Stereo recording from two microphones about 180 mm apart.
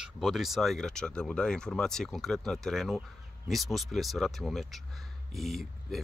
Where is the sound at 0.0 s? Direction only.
Centre (ahead or behind).